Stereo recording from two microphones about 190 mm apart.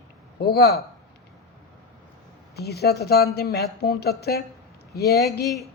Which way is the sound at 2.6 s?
55° left (ahead or behind).